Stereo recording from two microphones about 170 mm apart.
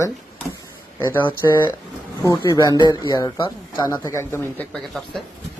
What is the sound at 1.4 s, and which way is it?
Speech, 20° left (ahead or behind).